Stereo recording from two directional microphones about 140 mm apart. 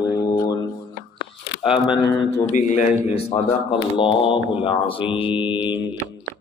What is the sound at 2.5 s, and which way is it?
Speech, 65° left (ahead or behind).